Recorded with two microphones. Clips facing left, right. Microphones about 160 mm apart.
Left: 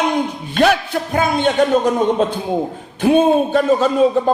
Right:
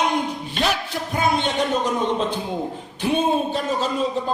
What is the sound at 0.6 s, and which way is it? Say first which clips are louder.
A man's voice: left 10 dB; 55° left (ahead or behind).